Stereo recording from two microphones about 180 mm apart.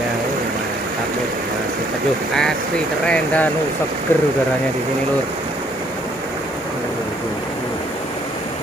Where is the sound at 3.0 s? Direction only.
5° left (ahead or behind).